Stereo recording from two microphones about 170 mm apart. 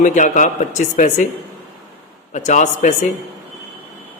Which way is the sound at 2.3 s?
45° left (ahead or behind).